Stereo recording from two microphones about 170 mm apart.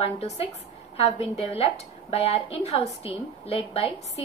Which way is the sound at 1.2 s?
35° left (ahead or behind).